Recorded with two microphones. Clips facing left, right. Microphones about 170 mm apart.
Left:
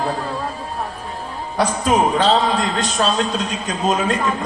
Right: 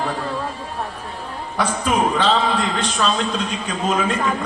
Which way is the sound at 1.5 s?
40° left (ahead or behind).